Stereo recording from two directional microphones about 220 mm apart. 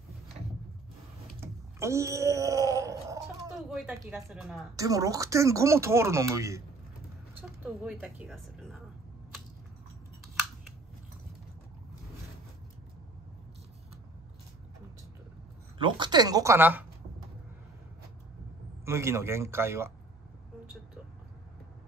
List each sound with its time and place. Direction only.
1.4 s a sound: 15° right (ahead or behind)
3.7 s speech: 5° right (ahead or behind)
4.7 s speech: 15° right (ahead or behind); by 8.7 s centre (ahead or behind)
15.8 s speech: 20° right (ahead or behind)
18.9 s speech: 10° right (ahead or behind)